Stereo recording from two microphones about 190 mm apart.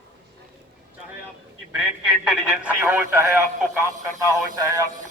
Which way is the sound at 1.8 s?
5° right (ahead or behind).